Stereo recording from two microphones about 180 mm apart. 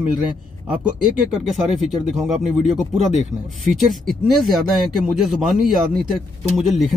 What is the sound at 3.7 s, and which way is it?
Speech, centre (ahead or behind).